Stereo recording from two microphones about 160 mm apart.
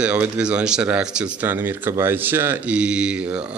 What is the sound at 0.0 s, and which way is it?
Speech, 5° right (ahead or behind).